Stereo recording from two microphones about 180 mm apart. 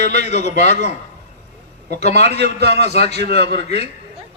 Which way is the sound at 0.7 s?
70° right (ahead or behind).